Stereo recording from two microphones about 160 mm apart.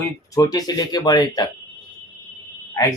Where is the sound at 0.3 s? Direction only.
25° left (ahead or behind).